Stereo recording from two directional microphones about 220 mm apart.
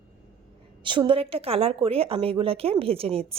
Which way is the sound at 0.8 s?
20° right (ahead or behind).